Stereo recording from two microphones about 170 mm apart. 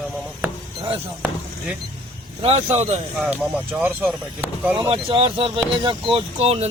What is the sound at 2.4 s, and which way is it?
Speech, 35° right (ahead or behind).